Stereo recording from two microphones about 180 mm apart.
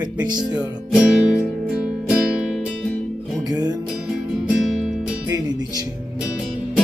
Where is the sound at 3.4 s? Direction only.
20° right (ahead or behind).